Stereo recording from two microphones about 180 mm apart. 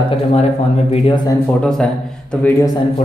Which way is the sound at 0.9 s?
25° left (ahead or behind).